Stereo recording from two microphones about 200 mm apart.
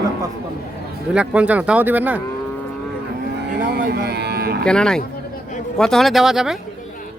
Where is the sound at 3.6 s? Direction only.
55° right (ahead or behind).